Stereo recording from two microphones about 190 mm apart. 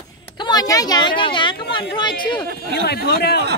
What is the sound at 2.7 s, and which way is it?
Speech, 60° left (ahead or behind).